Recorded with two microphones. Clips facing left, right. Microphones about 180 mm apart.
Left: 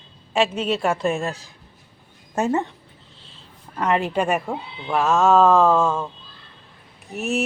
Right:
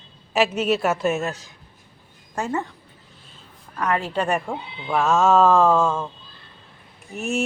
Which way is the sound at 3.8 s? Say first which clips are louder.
Left 2 dB; 20° left (ahead or behind).